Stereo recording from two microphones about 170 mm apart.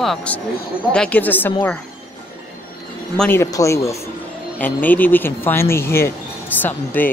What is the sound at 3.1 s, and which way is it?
Speech, 10° left (ahead or behind).